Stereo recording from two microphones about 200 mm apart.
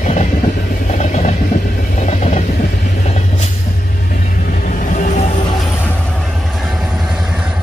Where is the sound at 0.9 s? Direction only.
35° left (ahead or behind).